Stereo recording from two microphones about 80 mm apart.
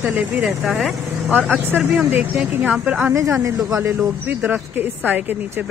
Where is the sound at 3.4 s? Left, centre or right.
Right.